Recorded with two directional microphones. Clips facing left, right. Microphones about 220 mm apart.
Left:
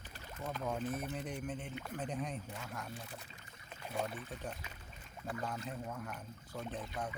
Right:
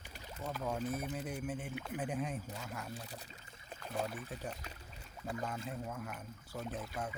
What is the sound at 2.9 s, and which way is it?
Speech, 35° right (ahead or behind).